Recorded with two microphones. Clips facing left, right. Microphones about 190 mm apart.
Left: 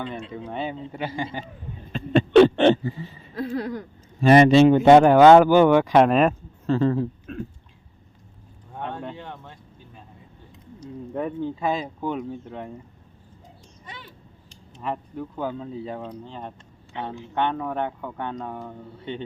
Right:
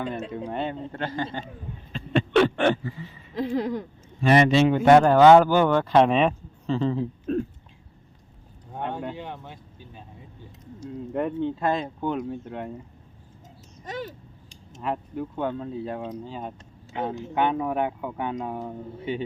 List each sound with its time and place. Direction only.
0.0 s speech: 5° right (ahead or behind)
1.9 s a sound: 35° left (ahead or behind)
3.3 s speech: 15° right (ahead or behind)
4.2 s speech: 35° left (ahead or behind)
4.9 s speech: 20° left (ahead or behind); by 7.1 s centre (ahead or behind)
8.8 s a sound: 10° right (ahead or behind)
10.8 s speech: 5° right (ahead or behind)
13.8 s a sound: 40° right (ahead or behind)
14.8 s speech: 5° right (ahead or behind)